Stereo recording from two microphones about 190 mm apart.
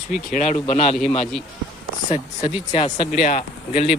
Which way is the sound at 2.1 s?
30° left (ahead or behind).